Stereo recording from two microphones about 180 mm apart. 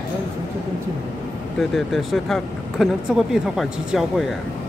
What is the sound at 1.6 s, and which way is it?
Speech, centre (ahead or behind).